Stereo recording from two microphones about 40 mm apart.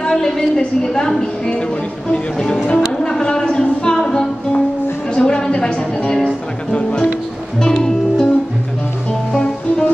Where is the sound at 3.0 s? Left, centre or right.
Centre.